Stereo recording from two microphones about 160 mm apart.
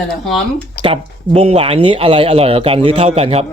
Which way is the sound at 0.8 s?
35° right (ahead or behind).